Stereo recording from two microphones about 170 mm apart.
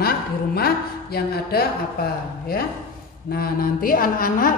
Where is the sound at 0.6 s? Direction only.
65° left (ahead or behind).